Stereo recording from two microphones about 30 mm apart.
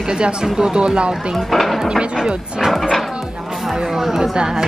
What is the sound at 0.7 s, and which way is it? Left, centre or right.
Speech, right.